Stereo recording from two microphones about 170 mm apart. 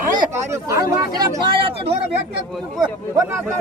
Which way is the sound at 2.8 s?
20° right (ahead or behind).